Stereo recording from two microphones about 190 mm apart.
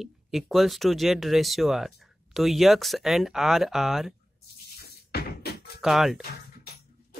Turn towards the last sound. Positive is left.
turn(degrees=0)  # may be behind; listen again after turning